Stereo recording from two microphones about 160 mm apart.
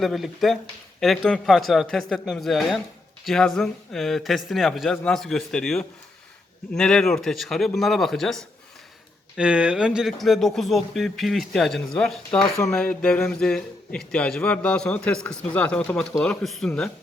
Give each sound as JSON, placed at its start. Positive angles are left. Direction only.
{"t": 0.0, "sound": "speech", "side_deg": 0}